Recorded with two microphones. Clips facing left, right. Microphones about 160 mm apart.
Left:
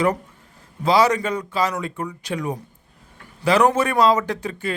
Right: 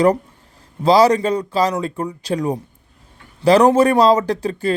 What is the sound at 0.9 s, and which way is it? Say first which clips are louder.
Speech: right 5 dB; 35° right (ahead or behind).